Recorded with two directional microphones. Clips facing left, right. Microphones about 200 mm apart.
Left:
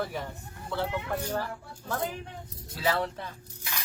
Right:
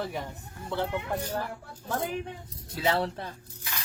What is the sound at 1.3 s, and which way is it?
Speech, 15° right (ahead or behind).